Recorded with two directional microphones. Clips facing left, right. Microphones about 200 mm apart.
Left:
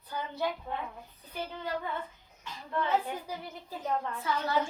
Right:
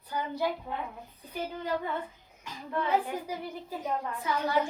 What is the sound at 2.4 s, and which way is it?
A child's voice, 10° right (ahead or behind).